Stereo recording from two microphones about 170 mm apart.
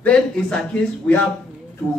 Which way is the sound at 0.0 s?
5° left (ahead or behind).